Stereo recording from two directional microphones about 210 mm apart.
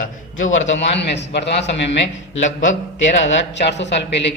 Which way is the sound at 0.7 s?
55° left (ahead or behind).